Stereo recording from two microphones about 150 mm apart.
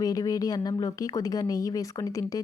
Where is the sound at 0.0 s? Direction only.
25° left (ahead or behind).